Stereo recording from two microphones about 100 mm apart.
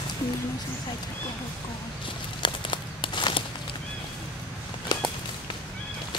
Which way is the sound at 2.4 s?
55° left (ahead or behind).